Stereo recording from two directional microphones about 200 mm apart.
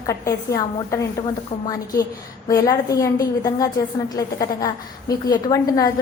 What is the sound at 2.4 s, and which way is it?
A woman's voice, 15° left (ahead or behind).